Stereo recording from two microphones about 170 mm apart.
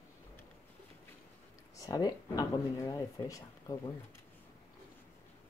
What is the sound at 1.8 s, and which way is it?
Speech, 20° left (ahead or behind).